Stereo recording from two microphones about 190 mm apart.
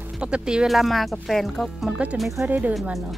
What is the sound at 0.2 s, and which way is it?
Speech, 5° right (ahead or behind).